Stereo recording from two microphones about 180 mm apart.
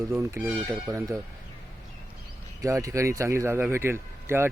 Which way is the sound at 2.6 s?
15° right (ahead or behind).